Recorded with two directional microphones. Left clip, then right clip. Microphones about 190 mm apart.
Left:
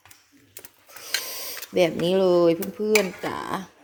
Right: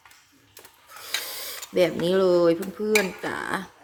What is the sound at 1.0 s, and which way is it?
Mechanisms, 10° left (ahead or behind).